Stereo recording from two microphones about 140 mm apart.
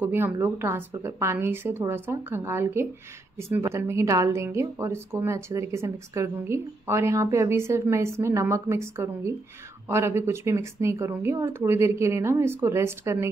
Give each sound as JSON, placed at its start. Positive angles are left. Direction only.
{"t": 0.0, "sound": "a woman's voice", "side_deg": -15}